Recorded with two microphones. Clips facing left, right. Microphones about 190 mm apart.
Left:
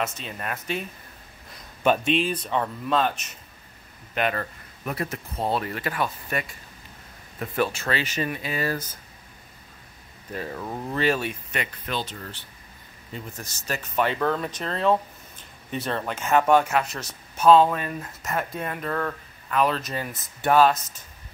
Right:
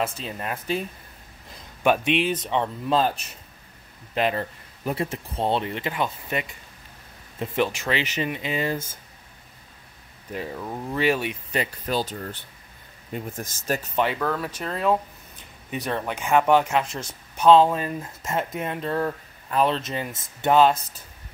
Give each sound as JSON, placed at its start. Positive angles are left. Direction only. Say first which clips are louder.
{"t": 0.0, "sound": "speech", "louder": "right 2 dB", "side_deg": -30}
{"t": 1.8, "sound": "speech", "louder": "right 1 dB", "side_deg": -15}
{"t": 10.3, "sound": "speech", "louder": "right 1 dB", "side_deg": -15}
{"t": 10.6, "sound": "speech", "louder": "even", "side_deg": 0}
{"t": 11.0, "sound": "speech", "louder": "right 1 dB", "side_deg": -15}
{"t": 11.5, "sound": "speech", "louder": "right 7 dB", "side_deg": -35}
{"t": 13.1, "sound": "speech", "louder": "right 5 dB", "side_deg": -50}
{"t": 14.2, "sound": "speech", "louder": "left 1 dB", "side_deg": -5}